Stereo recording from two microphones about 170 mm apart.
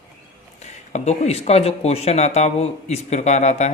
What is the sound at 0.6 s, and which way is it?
Speech, 40° left (ahead or behind).